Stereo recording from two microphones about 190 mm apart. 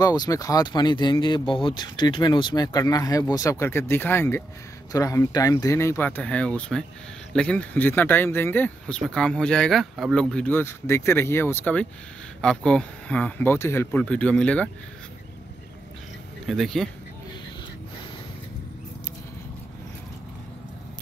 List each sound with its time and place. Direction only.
0.0 s speech: 20° left (ahead or behind)
16.4 s speech: centre (ahead or behind)